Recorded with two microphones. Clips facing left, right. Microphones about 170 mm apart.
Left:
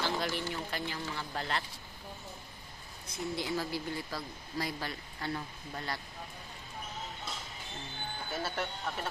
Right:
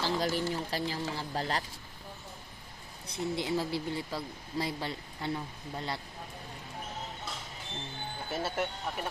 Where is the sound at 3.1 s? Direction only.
25° right (ahead or behind).